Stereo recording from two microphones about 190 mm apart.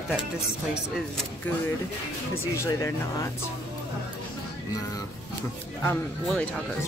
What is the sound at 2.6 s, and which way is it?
Speech, 15° left (ahead or behind).